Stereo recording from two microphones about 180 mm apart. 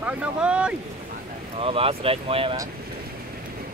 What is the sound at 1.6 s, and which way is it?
Speech, 30° right (ahead or behind).